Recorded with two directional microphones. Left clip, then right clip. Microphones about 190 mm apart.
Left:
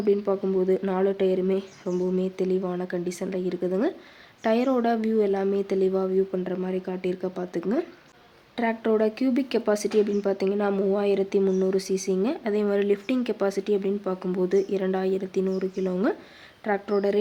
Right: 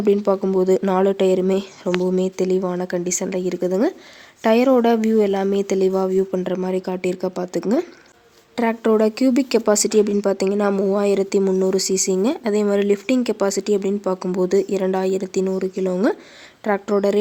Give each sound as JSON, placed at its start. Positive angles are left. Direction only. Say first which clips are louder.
{"t": 0.0, "sound": "speech", "louder": "right 6 dB", "side_deg": -45}